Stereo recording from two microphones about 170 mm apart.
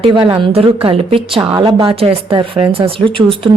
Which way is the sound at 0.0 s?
30° right (ahead or behind).